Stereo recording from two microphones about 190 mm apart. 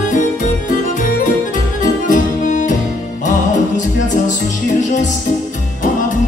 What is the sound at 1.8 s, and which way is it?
Music, 45° left (ahead or behind).